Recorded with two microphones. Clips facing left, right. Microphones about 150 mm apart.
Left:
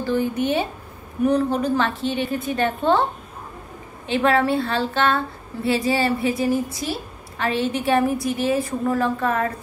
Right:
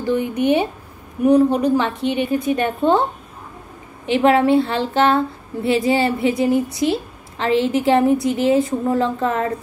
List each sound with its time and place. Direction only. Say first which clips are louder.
0.0 s a woman's voice: right 3 dB; 15° right (ahead or behind)
4.0 s speech: right 4 dB; 20° right (ahead or behind)
6.9 s a sound: right 7 dB; 25° right (ahead or behind)
7.8 s speech: right 5 dB; 25° right (ahead or behind)